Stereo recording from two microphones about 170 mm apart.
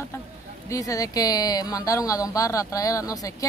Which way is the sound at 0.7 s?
20° left (ahead or behind).